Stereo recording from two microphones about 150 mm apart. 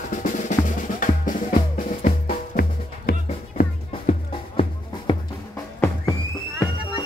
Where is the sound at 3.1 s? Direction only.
90° left.